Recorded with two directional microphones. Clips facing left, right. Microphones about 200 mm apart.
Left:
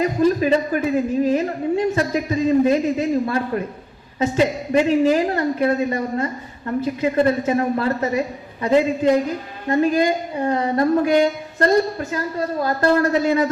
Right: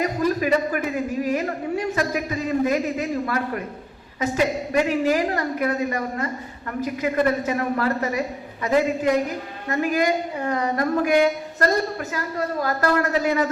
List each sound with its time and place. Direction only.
0.0 s a woman's voice: 25° left (ahead or behind)